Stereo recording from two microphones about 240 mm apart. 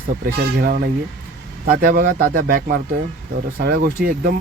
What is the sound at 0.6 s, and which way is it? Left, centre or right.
Speech, right.